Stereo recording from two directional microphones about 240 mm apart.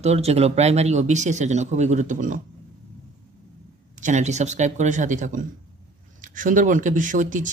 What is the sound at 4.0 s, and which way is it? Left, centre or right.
Speech, right.